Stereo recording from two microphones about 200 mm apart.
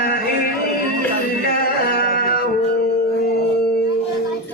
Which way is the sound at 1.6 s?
50° left (ahead or behind).